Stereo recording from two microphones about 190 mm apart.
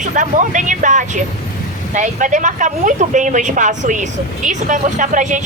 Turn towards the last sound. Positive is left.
turn(degrees=-40)  # may be behind; listen again after turning